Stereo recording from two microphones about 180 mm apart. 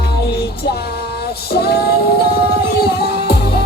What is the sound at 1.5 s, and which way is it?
Female singing, 60° left (ahead or behind).